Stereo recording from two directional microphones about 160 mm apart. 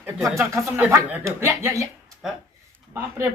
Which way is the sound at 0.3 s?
15° right (ahead or behind).